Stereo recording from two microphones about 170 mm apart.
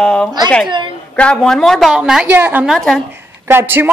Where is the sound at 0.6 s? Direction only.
25° right (ahead or behind).